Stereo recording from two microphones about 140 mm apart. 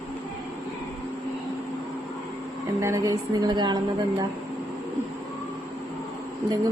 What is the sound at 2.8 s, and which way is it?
Speech, 20° right (ahead or behind).